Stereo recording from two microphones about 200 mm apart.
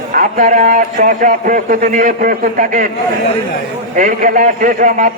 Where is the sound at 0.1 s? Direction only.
40° right (ahead or behind).